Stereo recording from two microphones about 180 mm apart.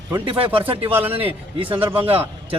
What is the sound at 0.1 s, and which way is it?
A man's voice, 30° right (ahead or behind).